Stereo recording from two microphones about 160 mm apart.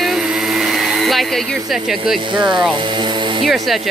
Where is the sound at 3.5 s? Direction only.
Centre (ahead or behind).